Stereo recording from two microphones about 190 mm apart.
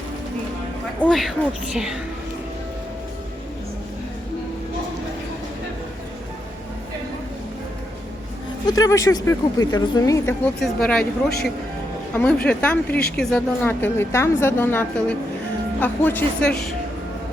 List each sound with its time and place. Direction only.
1.0 s a woman's voice: centre (ahead or behind)
8.6 s a woman's voice: 20° left (ahead or behind)